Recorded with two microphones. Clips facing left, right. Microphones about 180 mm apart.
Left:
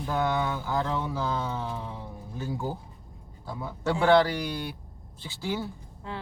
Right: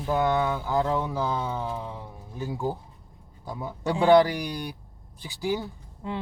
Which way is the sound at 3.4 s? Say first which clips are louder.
Even; 20° right (ahead or behind).